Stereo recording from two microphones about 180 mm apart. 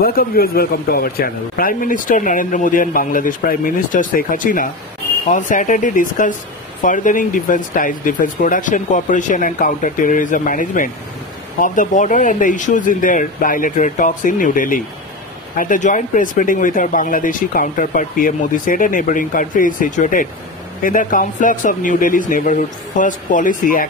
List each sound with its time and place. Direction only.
0.0 s speech: 55° left (ahead or behind)